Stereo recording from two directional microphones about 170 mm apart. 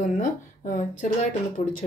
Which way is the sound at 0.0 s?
50° left (ahead or behind).